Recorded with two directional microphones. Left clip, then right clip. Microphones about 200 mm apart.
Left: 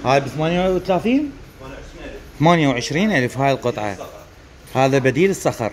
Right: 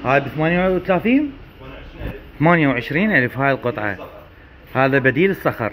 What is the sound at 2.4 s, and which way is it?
Speech, 15° left (ahead or behind).